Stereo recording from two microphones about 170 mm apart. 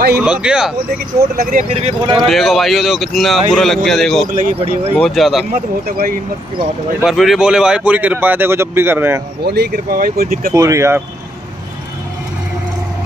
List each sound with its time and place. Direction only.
0.1 s speech: 5° right (ahead or behind)
1.3 s speech: 55° right (ahead or behind)
2.2 s speech: centre (ahead or behind)
4.4 s speech: 40° right (ahead or behind)
4.9 s speech: 5° left (ahead or behind)
5.5 s speech: 60° right (ahead or behind)
7.0 s speech: centre (ahead or behind)
9.4 s speech: 75° right (ahead or behind)
10.5 s speech: 15° right (ahead or behind)